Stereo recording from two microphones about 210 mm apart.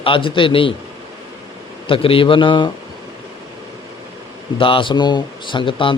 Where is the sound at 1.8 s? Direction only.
25° left (ahead or behind).